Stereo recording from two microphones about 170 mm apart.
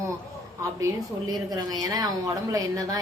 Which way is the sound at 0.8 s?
20° right (ahead or behind).